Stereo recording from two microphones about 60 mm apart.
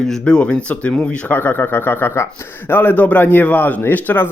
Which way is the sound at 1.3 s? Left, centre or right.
Left.